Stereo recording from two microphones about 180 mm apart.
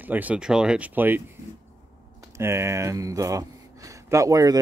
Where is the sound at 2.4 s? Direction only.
15° right (ahead or behind).